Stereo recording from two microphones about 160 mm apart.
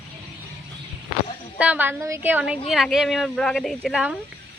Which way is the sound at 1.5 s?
10° right (ahead or behind).